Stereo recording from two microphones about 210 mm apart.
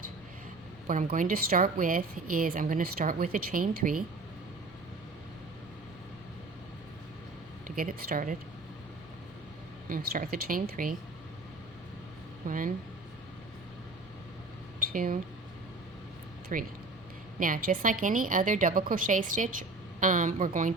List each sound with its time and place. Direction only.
0.9 s a woman's voice: 40° right (ahead or behind)
7.8 s a woman's voice: 40° right (ahead or behind)
9.9 s speech: 45° right (ahead or behind)
12.5 s a woman's voice: 40° right (ahead or behind)
14.8 s speech: 40° right (ahead or behind)
16.5 s a woman's voice: 40° right (ahead or behind)